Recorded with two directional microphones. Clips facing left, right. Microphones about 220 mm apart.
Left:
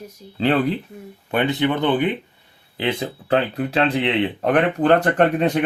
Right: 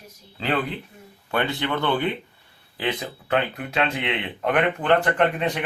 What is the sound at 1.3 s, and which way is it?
Speech, 20° left (ahead or behind).